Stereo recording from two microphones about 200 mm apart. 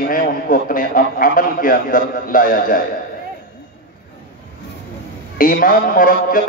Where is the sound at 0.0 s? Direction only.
45° left (ahead or behind).